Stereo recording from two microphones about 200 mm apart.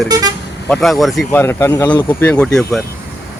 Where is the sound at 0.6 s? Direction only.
Centre (ahead or behind).